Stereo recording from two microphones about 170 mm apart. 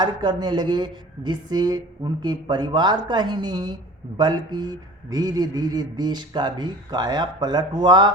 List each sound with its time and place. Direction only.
0.0 s a man's voice: 25° right (ahead or behind)